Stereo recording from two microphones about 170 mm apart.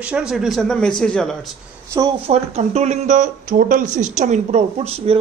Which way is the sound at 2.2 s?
40° right (ahead or behind).